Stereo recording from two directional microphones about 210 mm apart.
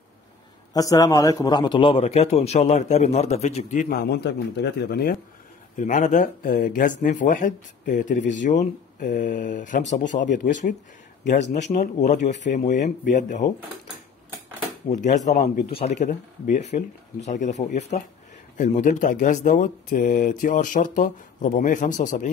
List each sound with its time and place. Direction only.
0.7 s speech: 15° left (ahead or behind); by 5.1 s 50° left (ahead or behind)
5.8 s speech: 35° left (ahead or behind)
11.8 s speech: 35° left (ahead or behind)
14.9 s speech: 35° left (ahead or behind)